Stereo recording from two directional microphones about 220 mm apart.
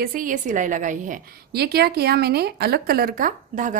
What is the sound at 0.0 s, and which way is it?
A woman's voice, 40° right (ahead or behind).